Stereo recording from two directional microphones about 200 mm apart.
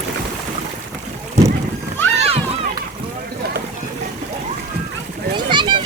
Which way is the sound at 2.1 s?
30° right (ahead or behind).